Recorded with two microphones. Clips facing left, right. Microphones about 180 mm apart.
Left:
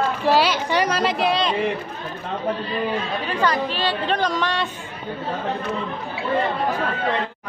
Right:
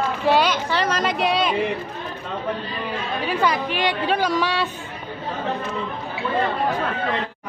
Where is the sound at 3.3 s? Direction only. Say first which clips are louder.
Even; 10° right (ahead or behind).